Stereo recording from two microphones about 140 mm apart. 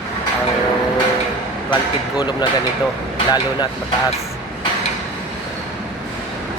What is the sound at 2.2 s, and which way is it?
Speech, 30° left (ahead or behind).